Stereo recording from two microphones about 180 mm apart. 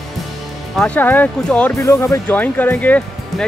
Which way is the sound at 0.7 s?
10° left (ahead or behind).